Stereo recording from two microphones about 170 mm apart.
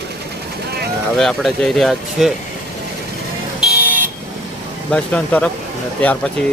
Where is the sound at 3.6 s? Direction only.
10° right (ahead or behind).